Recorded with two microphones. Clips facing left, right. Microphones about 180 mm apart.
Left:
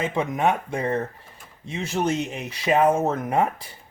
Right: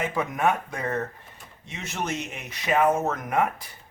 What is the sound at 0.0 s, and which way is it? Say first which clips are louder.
Speech: left 2 dB; 25° left (ahead or behind).